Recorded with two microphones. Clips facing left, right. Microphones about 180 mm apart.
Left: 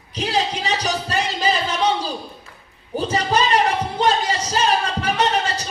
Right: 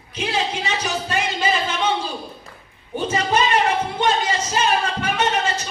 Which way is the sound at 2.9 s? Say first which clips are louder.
Even; 35° left (ahead or behind).